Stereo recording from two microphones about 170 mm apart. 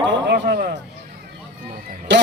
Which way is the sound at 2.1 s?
90° right.